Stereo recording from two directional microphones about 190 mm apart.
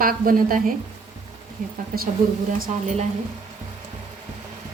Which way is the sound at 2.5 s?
40° right (ahead or behind).